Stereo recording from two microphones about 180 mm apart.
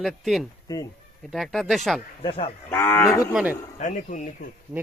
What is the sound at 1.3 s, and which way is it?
Speech, centre (ahead or behind).